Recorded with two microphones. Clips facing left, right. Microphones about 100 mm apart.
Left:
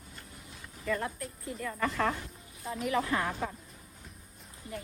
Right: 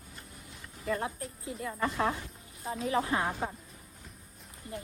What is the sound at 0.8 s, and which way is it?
Speech, 30° right (ahead or behind).